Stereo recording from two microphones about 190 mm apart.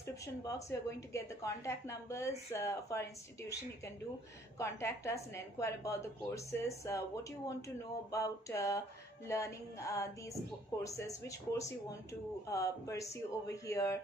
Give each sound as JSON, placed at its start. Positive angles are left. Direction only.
{"t": 0.0, "sound": "a woman's voice", "side_deg": 15}